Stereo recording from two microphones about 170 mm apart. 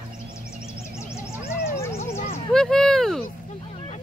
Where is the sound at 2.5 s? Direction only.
5° left (ahead or behind).